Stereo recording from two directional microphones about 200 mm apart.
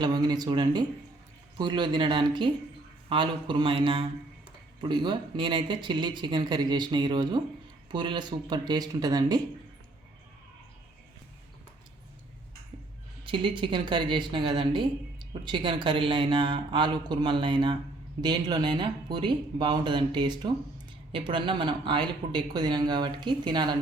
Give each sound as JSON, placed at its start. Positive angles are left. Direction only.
{"t": 0.0, "sound": "speech", "side_deg": -20}
{"t": 13.2, "sound": "speech", "side_deg": -25}